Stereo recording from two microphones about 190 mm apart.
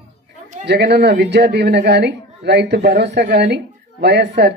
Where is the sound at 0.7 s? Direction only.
60° right (ahead or behind).